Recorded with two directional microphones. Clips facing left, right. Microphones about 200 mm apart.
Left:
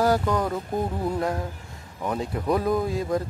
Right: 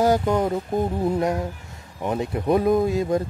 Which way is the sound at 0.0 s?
20° right (ahead or behind).